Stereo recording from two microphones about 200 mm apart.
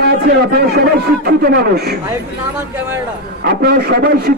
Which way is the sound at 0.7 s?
50° right (ahead or behind).